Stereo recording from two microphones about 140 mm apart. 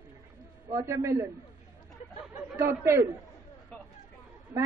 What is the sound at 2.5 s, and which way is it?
Speech, 15° right (ahead or behind).